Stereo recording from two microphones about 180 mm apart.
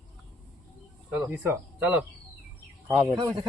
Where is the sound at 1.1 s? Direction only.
10° right (ahead or behind).